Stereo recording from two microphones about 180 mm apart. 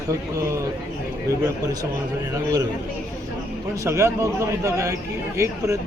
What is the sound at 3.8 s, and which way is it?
Speech, 15° right (ahead or behind).